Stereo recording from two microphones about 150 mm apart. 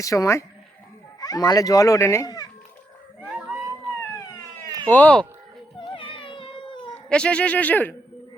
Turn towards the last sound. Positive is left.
turn(degrees=10)  # may be behind; listen again after turning